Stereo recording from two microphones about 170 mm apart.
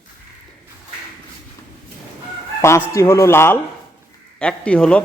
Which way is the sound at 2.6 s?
15° left (ahead or behind).